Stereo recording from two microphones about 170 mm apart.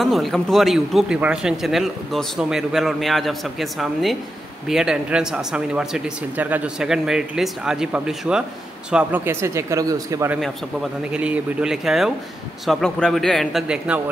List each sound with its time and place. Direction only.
0.0 s speech: centre (ahead or behind); by 10.3 s 20° right (ahead or behind)
10.3 s speech: 5° right (ahead or behind)